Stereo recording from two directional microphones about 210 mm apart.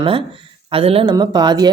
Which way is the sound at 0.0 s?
25° right (ahead or behind).